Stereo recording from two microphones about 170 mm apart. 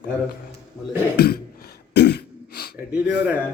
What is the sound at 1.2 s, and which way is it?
Cough, 65° left (ahead or behind).